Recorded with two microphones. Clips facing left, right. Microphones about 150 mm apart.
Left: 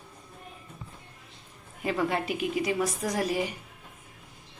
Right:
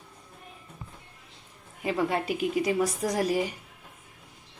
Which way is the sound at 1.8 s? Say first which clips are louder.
Right 1 dB; 20° right (ahead or behind).